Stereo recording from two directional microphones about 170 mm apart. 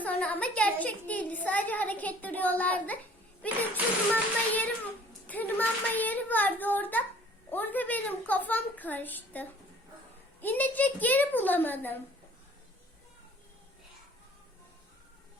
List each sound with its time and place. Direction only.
0.0 s a woman's voice: 10° left (ahead or behind)
4.1 s a woman's voice: 10° left (ahead or behind)